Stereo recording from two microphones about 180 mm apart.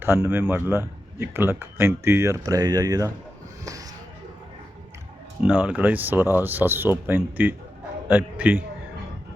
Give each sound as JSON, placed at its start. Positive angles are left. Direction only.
{"t": 0.0, "sound": "speech", "side_deg": -10}
{"t": 3.6, "sound": "a sound", "side_deg": -20}
{"t": 5.5, "sound": "a man's voice", "side_deg": -5}